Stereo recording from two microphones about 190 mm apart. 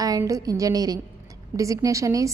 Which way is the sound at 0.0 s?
20° right (ahead or behind).